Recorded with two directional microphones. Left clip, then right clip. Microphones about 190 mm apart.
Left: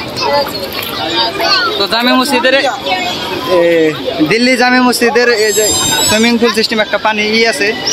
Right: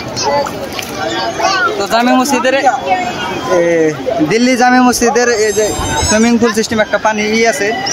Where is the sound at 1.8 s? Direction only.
5° left (ahead or behind).